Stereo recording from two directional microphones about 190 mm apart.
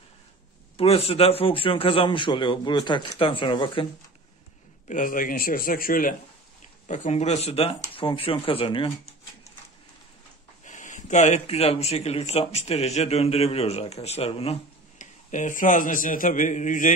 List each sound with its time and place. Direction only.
0.7 s a man's voice: 30° left (ahead or behind)
4.8 s speech: 45° left (ahead or behind)
6.9 s a man's voice: 35° left (ahead or behind)
10.6 s speech: 40° left (ahead or behind)